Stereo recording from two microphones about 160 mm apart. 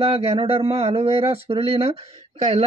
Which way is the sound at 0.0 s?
40° right (ahead or behind).